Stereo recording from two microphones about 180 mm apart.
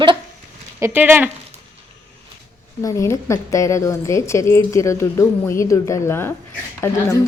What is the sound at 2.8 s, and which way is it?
A woman's voice, 15° left (ahead or behind).